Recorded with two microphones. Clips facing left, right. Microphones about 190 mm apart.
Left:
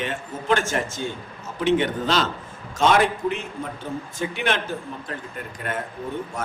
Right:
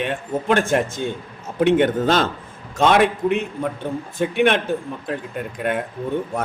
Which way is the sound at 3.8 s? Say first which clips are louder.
Right 3 dB; 65° right (ahead or behind).